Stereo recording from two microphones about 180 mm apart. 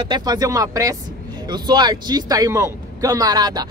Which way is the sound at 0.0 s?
25° right (ahead or behind).